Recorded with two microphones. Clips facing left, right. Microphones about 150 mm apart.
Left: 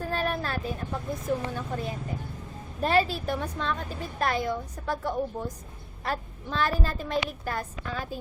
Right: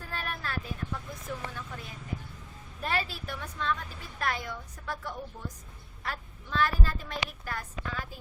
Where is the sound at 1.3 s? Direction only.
35° left (ahead or behind).